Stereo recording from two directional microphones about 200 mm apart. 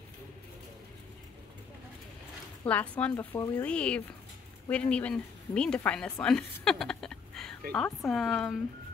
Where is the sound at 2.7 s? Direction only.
5° left (ahead or behind).